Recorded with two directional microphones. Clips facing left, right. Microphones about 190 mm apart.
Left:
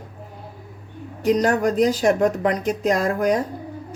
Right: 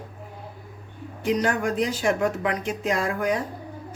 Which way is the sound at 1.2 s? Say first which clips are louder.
Left 5 dB; 40° left (ahead or behind).